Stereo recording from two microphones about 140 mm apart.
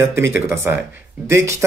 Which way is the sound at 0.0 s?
20° right (ahead or behind).